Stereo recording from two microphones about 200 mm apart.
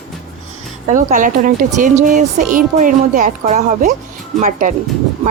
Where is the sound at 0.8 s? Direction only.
40° right (ahead or behind).